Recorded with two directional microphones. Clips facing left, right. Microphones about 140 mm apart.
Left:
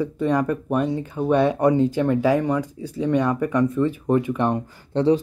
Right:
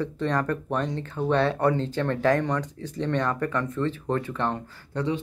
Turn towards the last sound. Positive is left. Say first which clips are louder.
# left 9 dB
turn(degrees=35)  # may be behind; listen again after turning